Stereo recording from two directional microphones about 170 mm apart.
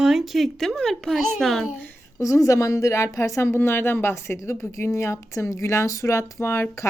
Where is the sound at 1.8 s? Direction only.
15° left (ahead or behind).